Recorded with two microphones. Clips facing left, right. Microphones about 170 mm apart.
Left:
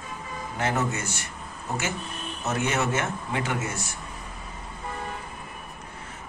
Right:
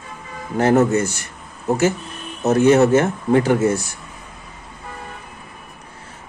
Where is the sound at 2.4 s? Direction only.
35° right (ahead or behind).